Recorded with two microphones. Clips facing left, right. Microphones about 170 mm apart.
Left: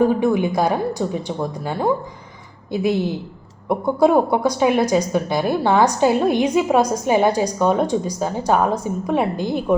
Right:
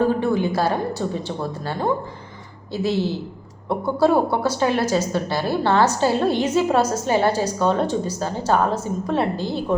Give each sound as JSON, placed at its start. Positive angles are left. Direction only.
{"t": 0.0, "sound": "a woman's voice", "side_deg": 15}